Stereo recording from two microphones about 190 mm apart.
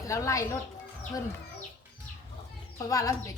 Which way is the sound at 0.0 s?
15° left (ahead or behind).